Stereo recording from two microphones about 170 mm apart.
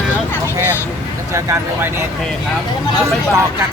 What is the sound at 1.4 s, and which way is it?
Speech, 15° right (ahead or behind).